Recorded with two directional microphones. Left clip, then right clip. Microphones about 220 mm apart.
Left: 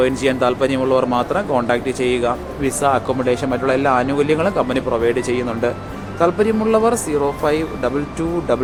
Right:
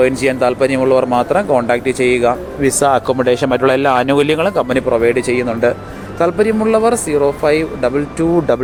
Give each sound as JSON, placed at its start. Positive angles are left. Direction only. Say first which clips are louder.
{"t": 0.0, "sound": "speech", "louder": "right 3 dB", "side_deg": -20}
{"t": 4.7, "sound": "speech", "louder": "right 5 dB", "side_deg": -20}
{"t": 8.5, "sound": "speech", "louder": "right 4 dB", "side_deg": -30}